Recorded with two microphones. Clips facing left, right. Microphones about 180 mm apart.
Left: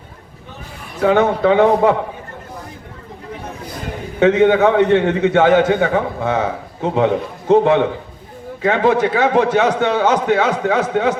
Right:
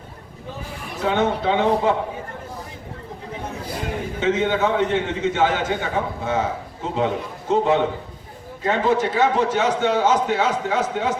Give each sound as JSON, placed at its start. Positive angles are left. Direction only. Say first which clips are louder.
{"t": 1.0, "sound": "a man's voice", "louder": "left 7 dB", "side_deg": 65}
{"t": 4.2, "sound": "a man's voice", "louder": "left 9 dB", "side_deg": 65}